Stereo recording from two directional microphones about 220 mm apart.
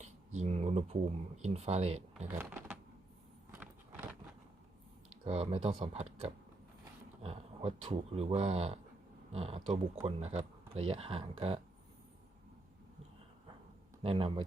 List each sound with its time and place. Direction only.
0.0 s a sound: 30° right (ahead or behind)
1.4 s speech: 30° right (ahead or behind)
2.1 s speech: 5° right (ahead or behind)
5.2 s speech: 25° right (ahead or behind)
14.0 s speech: 25° right (ahead or behind)